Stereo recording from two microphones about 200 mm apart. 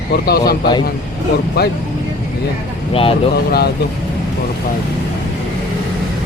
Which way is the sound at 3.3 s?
55° left (ahead or behind).